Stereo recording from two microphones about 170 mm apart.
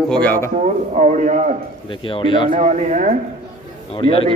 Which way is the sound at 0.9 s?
45° right (ahead or behind).